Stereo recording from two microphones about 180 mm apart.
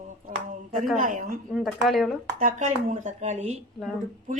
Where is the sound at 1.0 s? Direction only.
50° right (ahead or behind).